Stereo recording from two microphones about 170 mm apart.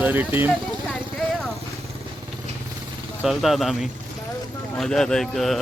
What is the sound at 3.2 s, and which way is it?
Speech, centre (ahead or behind).